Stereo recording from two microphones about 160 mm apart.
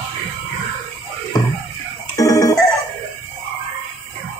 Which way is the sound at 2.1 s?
20° left (ahead or behind).